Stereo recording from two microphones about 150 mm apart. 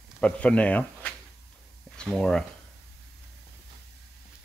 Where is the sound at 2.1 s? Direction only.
5° left (ahead or behind).